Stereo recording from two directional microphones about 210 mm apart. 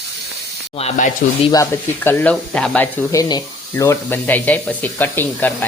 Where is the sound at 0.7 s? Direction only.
30° left (ahead or behind).